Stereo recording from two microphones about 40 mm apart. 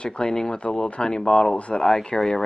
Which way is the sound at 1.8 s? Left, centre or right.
Centre.